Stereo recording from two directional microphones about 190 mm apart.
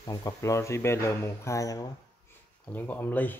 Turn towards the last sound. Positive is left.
turn(degrees=10)  # may be behind; listen again after turning